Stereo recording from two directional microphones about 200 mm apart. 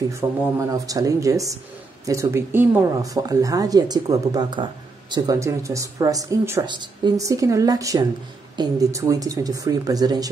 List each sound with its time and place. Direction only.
0.1 s speech: 15° right (ahead or behind)